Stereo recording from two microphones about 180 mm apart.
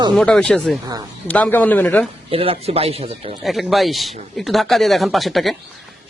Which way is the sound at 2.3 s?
30° right (ahead or behind).